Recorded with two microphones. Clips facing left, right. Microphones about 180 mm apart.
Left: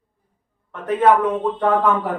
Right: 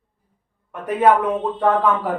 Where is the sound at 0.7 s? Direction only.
10° right (ahead or behind).